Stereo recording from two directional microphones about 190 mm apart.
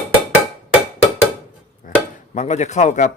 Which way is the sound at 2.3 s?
35° left (ahead or behind).